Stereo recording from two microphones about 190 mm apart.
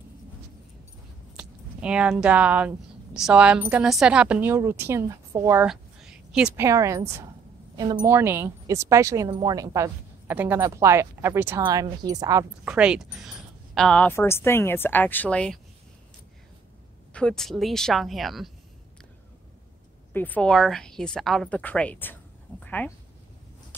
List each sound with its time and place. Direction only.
1.3 s speech: 5° right (ahead or behind)
5.7 s a woman's voice: 5° right (ahead or behind)
12.6 s a woman's voice: 5° right (ahead or behind)
17.1 s a woman's voice: 5° left (ahead or behind)
20.1 s a woman's voice: 10° left (ahead or behind)